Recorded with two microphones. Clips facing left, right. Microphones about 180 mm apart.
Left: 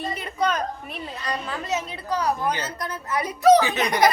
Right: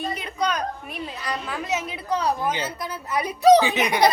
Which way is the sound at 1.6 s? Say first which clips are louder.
Even; 15° right (ahead or behind).